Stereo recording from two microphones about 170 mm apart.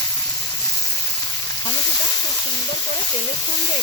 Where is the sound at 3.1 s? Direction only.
20° left (ahead or behind).